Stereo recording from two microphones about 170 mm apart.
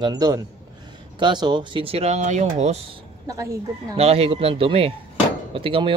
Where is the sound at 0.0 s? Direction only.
25° right (ahead or behind).